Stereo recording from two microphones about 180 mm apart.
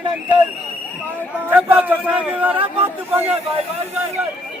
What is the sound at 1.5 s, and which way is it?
Speech, 10° right (ahead or behind).